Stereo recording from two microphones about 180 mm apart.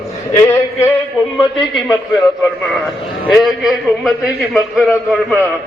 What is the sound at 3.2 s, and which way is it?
A man's voice, centre (ahead or behind).